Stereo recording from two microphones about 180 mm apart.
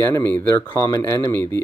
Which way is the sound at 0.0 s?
15° left (ahead or behind).